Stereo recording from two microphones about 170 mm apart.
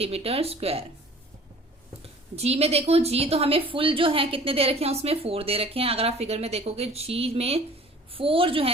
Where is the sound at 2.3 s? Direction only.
40° right (ahead or behind).